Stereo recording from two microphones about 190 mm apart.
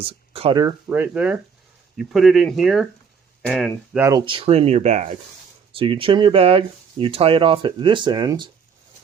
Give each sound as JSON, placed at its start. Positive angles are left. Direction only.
{"t": 0.0, "sound": "speech", "side_deg": -30}
{"t": 0.6, "sound": "speech", "side_deg": -10}
{"t": 3.9, "sound": "speech", "side_deg": -15}
{"t": 4.3, "sound": "speech", "side_deg": -30}